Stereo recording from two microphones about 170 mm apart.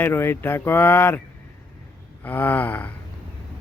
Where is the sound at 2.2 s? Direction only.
10° left (ahead or behind).